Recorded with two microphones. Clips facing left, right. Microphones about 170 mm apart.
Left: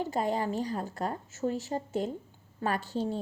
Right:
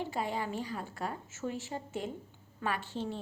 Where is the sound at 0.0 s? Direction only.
40° left (ahead or behind).